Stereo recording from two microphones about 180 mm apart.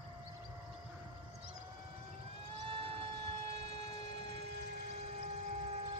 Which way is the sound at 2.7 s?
30° right (ahead or behind).